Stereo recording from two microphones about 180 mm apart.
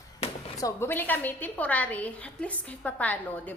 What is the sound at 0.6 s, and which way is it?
A woman's voice, 15° left (ahead or behind).